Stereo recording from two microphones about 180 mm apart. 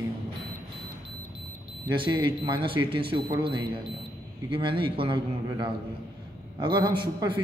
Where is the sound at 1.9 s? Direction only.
25° right (ahead or behind).